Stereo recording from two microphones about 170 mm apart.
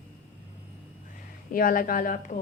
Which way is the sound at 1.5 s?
55° left (ahead or behind).